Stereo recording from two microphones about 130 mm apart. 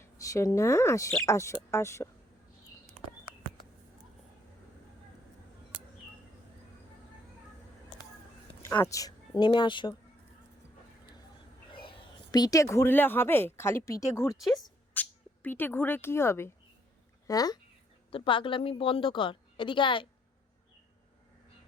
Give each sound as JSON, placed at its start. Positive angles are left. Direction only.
{"t": 0.0, "sound": "speech", "side_deg": 25}
{"t": 8.6, "sound": "speech", "side_deg": 20}
{"t": 11.7, "sound": "speech", "side_deg": 40}
{"t": 14.9, "sound": "speech", "side_deg": 15}
{"t": 18.1, "sound": "a woman's voice", "side_deg": 40}